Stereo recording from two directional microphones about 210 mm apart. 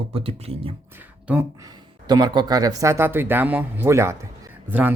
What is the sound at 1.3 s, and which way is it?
Speech, 15° right (ahead or behind).